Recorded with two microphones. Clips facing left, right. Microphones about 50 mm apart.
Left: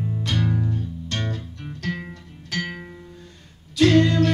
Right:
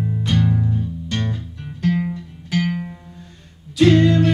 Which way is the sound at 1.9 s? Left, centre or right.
Centre.